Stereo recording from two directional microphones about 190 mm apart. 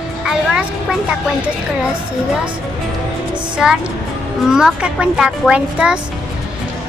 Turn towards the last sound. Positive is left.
turn(degrees=-5)  # may be behind; listen again after turning